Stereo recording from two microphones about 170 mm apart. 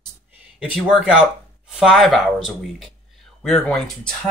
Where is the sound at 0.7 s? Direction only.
5° right (ahead or behind).